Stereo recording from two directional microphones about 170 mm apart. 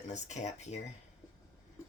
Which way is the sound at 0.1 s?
45° left (ahead or behind).